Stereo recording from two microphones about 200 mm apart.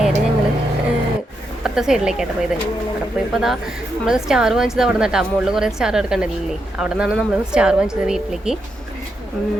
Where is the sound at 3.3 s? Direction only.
Centre (ahead or behind).